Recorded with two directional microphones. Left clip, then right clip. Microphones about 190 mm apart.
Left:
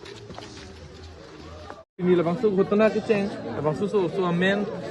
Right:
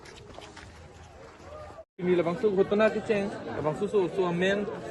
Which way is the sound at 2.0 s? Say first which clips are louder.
Left 4 dB; centre (ahead or behind).